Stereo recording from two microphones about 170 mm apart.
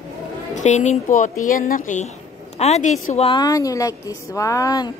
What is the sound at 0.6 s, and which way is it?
A woman's voice, 45° left (ahead or behind).